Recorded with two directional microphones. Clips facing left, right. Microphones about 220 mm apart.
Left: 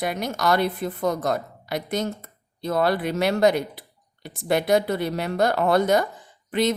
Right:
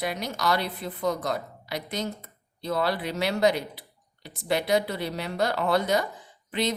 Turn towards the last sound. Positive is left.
turn(degrees=50)  # may be behind; listen again after turning